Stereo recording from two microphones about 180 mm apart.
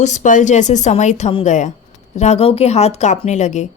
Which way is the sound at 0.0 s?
40° left (ahead or behind).